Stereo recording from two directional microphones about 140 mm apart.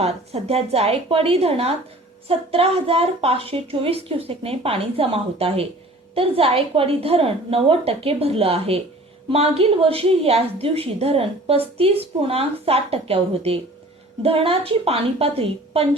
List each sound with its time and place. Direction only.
0.0 s a woman's voice: 50° right (ahead or behind)